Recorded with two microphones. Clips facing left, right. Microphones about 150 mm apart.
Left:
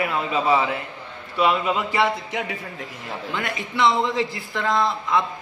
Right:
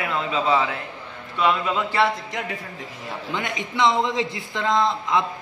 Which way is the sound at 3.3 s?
20° right (ahead or behind).